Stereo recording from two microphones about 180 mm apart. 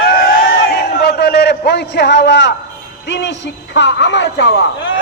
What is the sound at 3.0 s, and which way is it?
Speech, 80° left.